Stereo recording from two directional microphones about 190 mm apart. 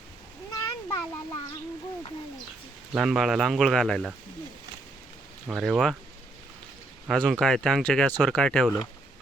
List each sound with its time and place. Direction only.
0.5 s a sound: 15° left (ahead or behind)
2.9 s speech: centre (ahead or behind)
5.5 s speech: centre (ahead or behind)
7.1 s speech: centre (ahead or behind)